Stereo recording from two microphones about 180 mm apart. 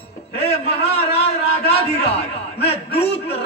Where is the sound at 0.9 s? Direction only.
35° left (ahead or behind).